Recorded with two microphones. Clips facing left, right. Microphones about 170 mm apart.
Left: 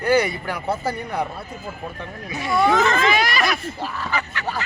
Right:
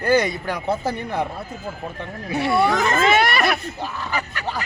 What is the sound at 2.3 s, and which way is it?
Speech, 60° right (ahead or behind).